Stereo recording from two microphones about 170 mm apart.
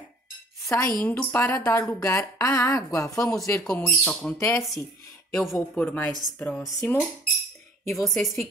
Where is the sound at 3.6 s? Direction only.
5° left (ahead or behind).